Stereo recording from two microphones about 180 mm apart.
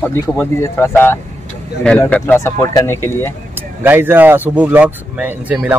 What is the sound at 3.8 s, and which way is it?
Speech, 10° right (ahead or behind).